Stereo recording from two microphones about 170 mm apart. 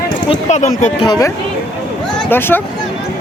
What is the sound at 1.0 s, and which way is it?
Speech, 25° left (ahead or behind).